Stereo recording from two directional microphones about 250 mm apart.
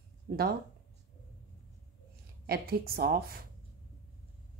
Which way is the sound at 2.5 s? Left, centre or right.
Right.